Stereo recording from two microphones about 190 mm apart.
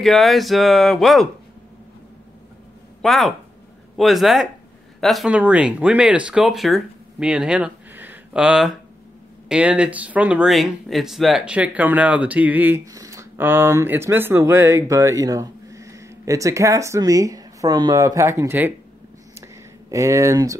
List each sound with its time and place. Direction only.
0.0 s speech: centre (ahead or behind)
3.0 s speech: centre (ahead or behind)
19.4 s a sound: 15° right (ahead or behind)